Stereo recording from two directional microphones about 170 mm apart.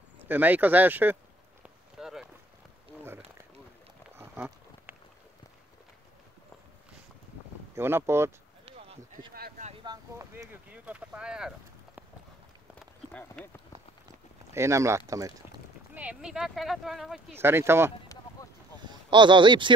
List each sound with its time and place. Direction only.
0.3 s speech: 10° right (ahead or behind)
2.0 s boat: centre (ahead or behind)
4.2 s a sound: 15° right (ahead or behind)
7.7 s speech: 15° right (ahead or behind)
8.6 s a sound: 35° right (ahead or behind)
9.8 s speech: 20° right (ahead or behind)
12.7 s run: 5° left (ahead or behind)
14.0 s a sound: 15° right (ahead or behind)
15.9 s speech: 10° right (ahead or behind)
17.4 s speech: 15° right (ahead or behind)
18.0 s a sound: 20° left (ahead or behind)
18.8 s speech: 25° right (ahead or behind)